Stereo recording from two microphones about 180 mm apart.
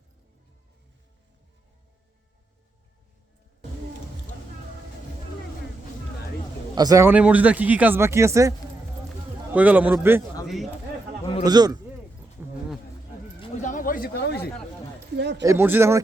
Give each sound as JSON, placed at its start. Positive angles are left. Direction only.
{"t": 6.7, "sound": "speech", "side_deg": -20}
{"t": 10.4, "sound": "a man's voice", "side_deg": 0}
{"t": 11.4, "sound": "a man's voice", "side_deg": -20}
{"t": 12.4, "sound": "a sound", "side_deg": -15}
{"t": 13.6, "sound": "a sound", "side_deg": 45}
{"t": 15.1, "sound": "speech", "side_deg": -70}
{"t": 15.4, "sound": "speech", "side_deg": -15}